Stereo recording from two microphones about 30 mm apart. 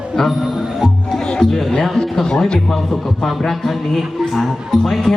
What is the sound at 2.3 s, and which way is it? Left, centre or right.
Speech, left.